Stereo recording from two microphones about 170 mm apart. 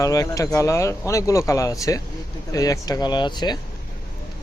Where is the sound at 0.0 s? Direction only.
20° left (ahead or behind).